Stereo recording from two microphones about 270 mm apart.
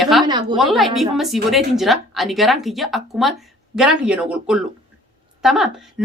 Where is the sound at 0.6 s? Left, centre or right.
Centre.